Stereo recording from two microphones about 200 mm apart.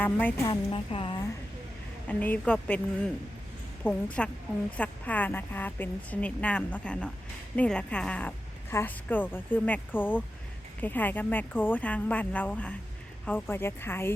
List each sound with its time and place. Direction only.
0.0 s a woman's voice: 10° left (ahead or behind)
0.4 s speech: 25° left (ahead or behind)
2.0 s a woman's voice: 10° left (ahead or behind)
3.8 s a woman's voice: 5° left (ahead or behind)